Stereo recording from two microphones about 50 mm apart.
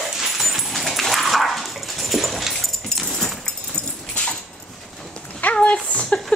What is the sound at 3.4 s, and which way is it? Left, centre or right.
Dog, centre.